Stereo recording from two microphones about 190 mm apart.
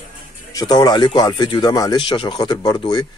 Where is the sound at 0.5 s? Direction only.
20° left (ahead or behind).